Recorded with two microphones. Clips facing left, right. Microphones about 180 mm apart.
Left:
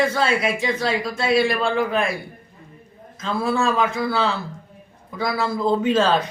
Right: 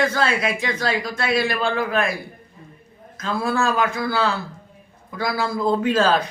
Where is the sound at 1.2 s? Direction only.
30° left (ahead or behind).